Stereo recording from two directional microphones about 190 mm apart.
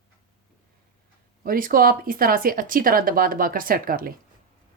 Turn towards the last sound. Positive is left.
turn(degrees=-50)  # may be behind; listen again after turning